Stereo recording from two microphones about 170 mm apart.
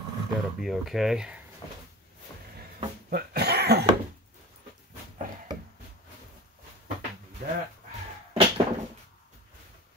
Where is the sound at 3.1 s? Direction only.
65° right (ahead or behind).